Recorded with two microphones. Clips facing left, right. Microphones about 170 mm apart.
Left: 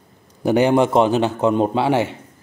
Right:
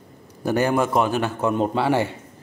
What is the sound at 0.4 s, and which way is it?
A man's voice, 20° left (ahead or behind).